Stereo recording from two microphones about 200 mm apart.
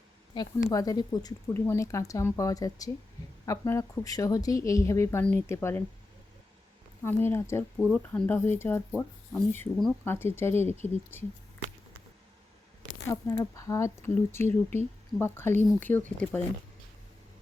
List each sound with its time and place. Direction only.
0.3 s speech: 15° left (ahead or behind)
7.0 s speech: 10° left (ahead or behind)
7.8 s speech: centre (ahead or behind)
13.1 s speech: 15° left (ahead or behind)